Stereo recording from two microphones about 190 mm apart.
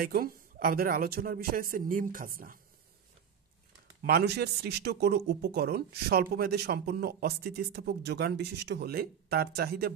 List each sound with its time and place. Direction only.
0.0 s a woman's voice: 50° right (ahead or behind)
4.0 s speech: 55° right (ahead or behind)